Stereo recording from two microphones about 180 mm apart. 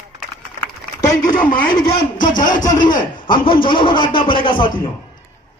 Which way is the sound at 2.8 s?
25° left (ahead or behind).